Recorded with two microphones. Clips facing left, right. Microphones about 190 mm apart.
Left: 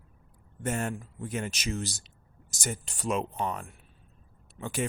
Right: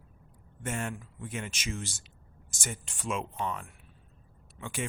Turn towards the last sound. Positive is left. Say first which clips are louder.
# left 4 dB
turn(degrees=40)  # may be behind; listen again after turning